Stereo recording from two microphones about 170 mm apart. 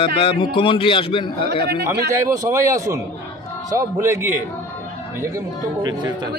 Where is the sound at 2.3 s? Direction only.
15° right (ahead or behind).